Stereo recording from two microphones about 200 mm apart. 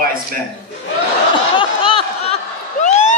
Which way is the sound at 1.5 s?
25° left (ahead or behind).